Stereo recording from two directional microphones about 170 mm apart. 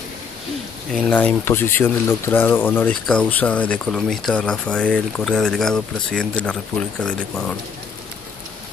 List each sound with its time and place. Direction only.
1.1 s speech: 10° left (ahead or behind)